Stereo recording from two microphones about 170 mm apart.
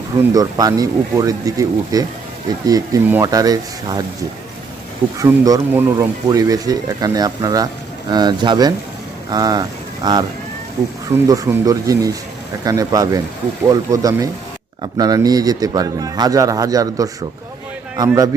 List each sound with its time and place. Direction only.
0.3 s speech: 20° right (ahead or behind)
5.2 s a man's voice: 20° right (ahead or behind)